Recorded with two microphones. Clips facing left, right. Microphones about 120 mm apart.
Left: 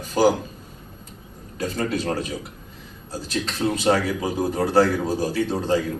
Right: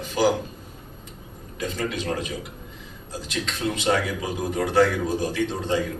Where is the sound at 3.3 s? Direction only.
35° left (ahead or behind).